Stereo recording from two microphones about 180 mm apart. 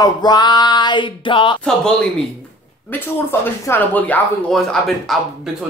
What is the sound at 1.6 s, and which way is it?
Speech, 5° left (ahead or behind).